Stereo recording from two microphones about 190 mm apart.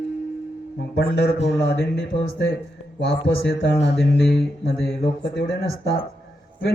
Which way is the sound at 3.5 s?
60° left (ahead or behind).